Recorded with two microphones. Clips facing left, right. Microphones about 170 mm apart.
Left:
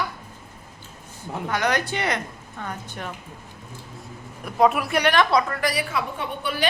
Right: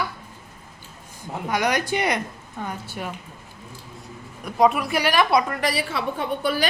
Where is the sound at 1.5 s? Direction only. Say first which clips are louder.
Right 1 dB; 10° right (ahead or behind).